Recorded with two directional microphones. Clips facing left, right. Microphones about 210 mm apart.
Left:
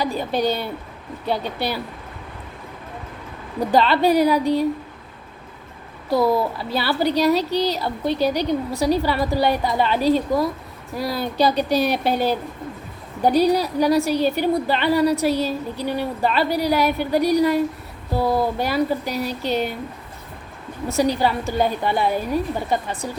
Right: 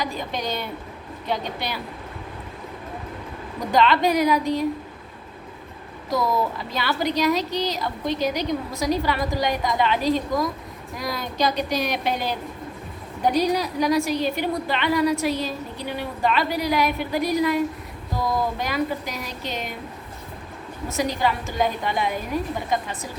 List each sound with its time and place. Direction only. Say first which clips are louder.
0.0 s speech: left 7 dB; 35° left (ahead or behind)
3.7 s speech: left 2 dB; 35° left (ahead or behind)
6.3 s speech: left 3 dB; 30° left (ahead or behind)
20.9 s speech: left 4 dB; 35° left (ahead or behind)